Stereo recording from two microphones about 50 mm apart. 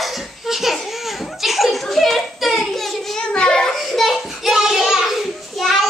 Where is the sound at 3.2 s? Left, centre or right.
Centre.